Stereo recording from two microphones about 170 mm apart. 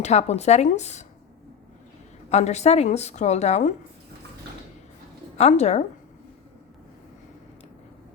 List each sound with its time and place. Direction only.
0.0 s a woman's voice: 40° left (ahead or behind)
2.3 s a woman's voice: 40° left (ahead or behind)
5.4 s a woman's voice: 40° left (ahead or behind)